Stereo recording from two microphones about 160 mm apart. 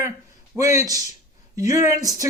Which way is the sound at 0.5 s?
20° right (ahead or behind).